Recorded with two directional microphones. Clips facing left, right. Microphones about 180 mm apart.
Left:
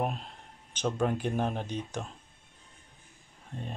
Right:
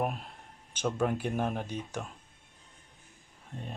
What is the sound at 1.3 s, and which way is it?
Speech, 5° right (ahead or behind).